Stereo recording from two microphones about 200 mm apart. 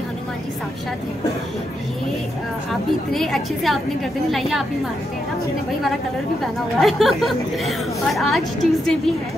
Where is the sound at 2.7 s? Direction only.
Centre (ahead or behind).